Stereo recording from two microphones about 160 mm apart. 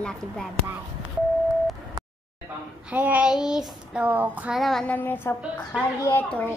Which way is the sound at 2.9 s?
10° right (ahead or behind).